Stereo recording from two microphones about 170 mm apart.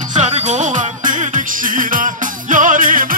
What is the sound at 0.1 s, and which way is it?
Music, 45° right (ahead or behind).